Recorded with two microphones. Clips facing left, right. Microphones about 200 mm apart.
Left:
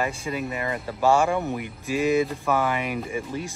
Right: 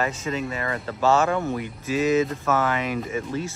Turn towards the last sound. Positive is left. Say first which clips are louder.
# right 2 dB
turn(degrees=15)  # may be behind; listen again after turning